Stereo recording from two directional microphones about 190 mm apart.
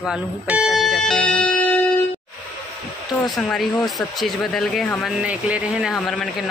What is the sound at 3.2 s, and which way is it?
Speech, centre (ahead or behind).